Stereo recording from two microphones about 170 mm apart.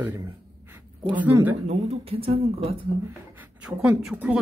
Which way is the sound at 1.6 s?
40° right (ahead or behind).